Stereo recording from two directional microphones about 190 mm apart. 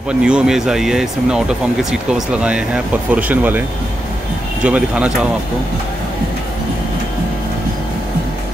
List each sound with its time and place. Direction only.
0.2 s speech: 5° right (ahead or behind)
4.6 s speech: 5° right (ahead or behind)